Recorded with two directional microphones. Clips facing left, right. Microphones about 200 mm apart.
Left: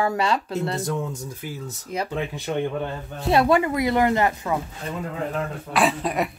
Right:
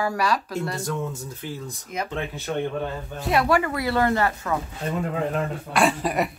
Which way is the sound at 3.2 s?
25° left (ahead or behind).